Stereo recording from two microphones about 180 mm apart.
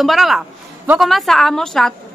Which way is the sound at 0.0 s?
Centre (ahead or behind).